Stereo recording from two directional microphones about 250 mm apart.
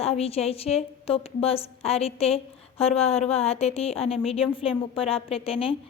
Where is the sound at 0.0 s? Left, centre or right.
Left.